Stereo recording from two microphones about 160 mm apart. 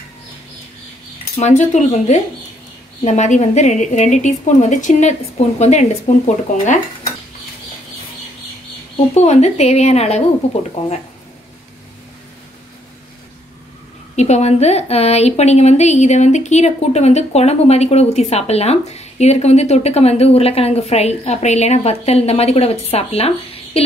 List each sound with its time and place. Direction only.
1.4 s a woman's voice: 50° left (ahead or behind)
9.1 s a woman's voice: 45° left (ahead or behind)
14.1 s a woman's voice: 45° left (ahead or behind)